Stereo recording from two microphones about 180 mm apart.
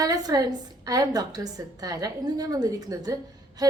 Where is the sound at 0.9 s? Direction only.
20° right (ahead or behind).